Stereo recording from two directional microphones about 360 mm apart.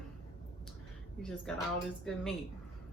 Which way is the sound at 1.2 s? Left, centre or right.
Centre.